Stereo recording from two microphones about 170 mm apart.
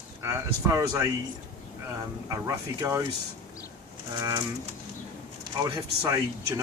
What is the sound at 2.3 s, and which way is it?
Speech, 20° right (ahead or behind).